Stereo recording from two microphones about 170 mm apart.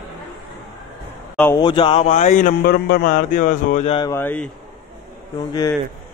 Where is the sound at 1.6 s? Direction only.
30° left (ahead or behind).